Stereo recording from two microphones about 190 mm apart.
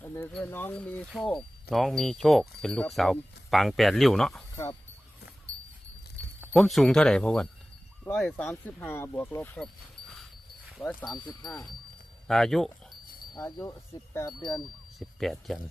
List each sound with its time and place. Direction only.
0.0 s a sound: 15° left (ahead or behind)
0.3 s speech: 10° left (ahead or behind)
4.5 s speech: 15° left (ahead or behind)
6.5 s speech: centre (ahead or behind)
11.1 s speech: 5° left (ahead or behind)
13.3 s speech: 20° left (ahead or behind)
14.6 s speech: centre (ahead or behind)